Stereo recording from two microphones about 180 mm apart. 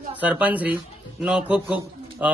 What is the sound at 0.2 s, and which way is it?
A man's voice, 10° right (ahead or behind).